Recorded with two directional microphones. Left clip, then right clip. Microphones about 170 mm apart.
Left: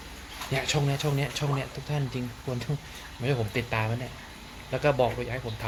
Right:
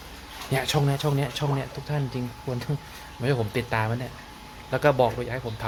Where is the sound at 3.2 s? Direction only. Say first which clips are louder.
Right 3 dB; 15° right (ahead or behind).